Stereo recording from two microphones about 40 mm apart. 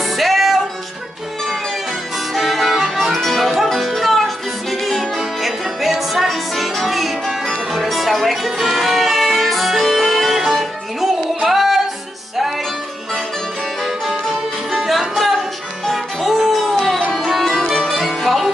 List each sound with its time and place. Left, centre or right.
0.0 s music: centre
2.3 s music: centre
13.8 s music: centre